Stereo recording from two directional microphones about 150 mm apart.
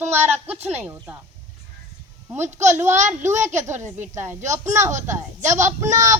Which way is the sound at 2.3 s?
15° right (ahead or behind).